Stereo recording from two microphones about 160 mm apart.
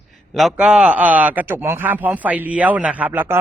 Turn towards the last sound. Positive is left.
turn(degrees=-10)  # may be behind; listen again after turning